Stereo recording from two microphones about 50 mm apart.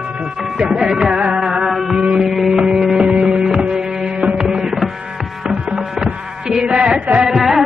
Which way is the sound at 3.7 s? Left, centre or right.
Centre.